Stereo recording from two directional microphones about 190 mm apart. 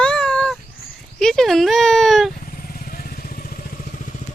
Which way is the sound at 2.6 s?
50° left (ahead or behind).